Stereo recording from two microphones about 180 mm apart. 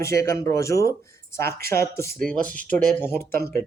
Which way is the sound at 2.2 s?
5° left (ahead or behind).